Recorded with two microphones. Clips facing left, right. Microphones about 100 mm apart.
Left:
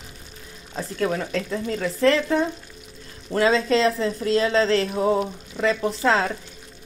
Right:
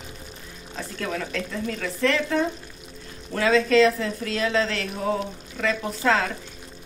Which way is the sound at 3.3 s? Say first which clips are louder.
Even; 30° left (ahead or behind).